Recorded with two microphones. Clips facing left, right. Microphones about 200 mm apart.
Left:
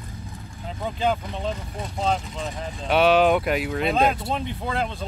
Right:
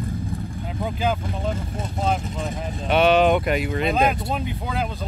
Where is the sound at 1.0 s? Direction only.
5° right (ahead or behind).